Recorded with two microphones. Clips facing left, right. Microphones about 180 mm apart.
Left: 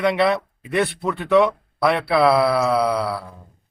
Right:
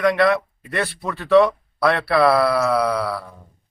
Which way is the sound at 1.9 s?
Centre (ahead or behind).